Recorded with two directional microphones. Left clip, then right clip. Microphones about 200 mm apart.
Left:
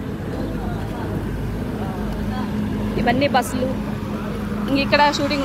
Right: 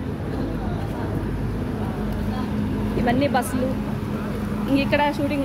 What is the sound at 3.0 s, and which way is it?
Speech, 10° right (ahead or behind).